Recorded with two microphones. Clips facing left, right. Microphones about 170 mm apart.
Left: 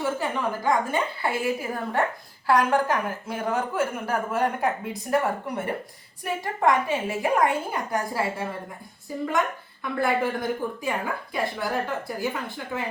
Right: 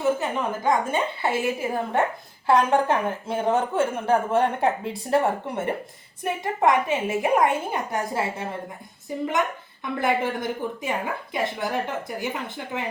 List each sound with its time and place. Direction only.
0.0 s a woman's voice: 20° right (ahead or behind)